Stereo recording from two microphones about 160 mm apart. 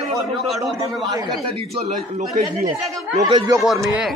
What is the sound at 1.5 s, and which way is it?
Speech, 35° right (ahead or behind).